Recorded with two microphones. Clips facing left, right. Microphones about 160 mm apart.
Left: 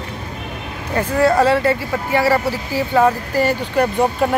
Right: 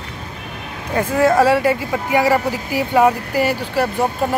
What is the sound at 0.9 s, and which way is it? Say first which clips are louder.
Speech: even; 10° right (ahead or behind).